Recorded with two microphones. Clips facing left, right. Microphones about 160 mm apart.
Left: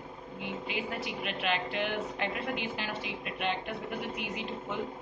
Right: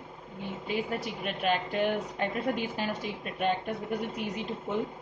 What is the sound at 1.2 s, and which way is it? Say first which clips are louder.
Speech: right 4 dB; 40° right (ahead or behind).